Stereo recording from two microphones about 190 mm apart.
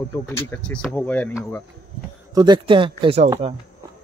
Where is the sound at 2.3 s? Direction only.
25° right (ahead or behind).